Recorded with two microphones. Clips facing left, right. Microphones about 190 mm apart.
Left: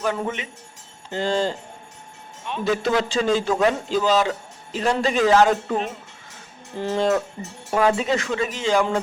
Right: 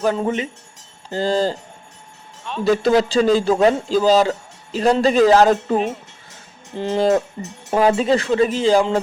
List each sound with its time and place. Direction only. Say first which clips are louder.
0.2 s a man's voice: right 6 dB; 35° right (ahead or behind)
2.6 s a man's voice: right 6 dB; 35° right (ahead or behind)
6.7 s a man's voice: right 4 dB; 25° right (ahead or behind)